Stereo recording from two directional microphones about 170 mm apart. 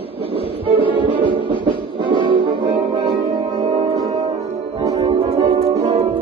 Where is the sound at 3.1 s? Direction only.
25° right (ahead or behind).